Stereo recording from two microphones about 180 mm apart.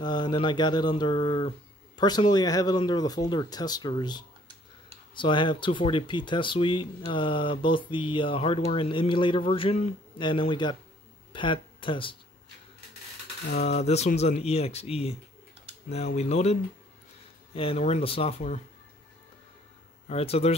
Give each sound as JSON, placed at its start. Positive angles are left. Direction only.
{"t": 0.0, "sound": "speech", "side_deg": 25}
{"t": 13.6, "sound": "speech", "side_deg": 35}
{"t": 16.2, "sound": "speech", "side_deg": 35}
{"t": 17.6, "sound": "speech", "side_deg": 35}
{"t": 20.1, "sound": "speech", "side_deg": 35}